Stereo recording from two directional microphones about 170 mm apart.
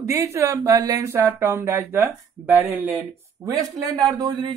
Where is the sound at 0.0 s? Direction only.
15° right (ahead or behind).